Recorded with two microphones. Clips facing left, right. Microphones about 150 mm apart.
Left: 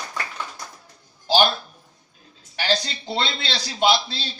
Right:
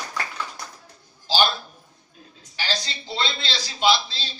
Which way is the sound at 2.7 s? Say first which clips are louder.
Left 7 dB; 55° left (ahead or behind).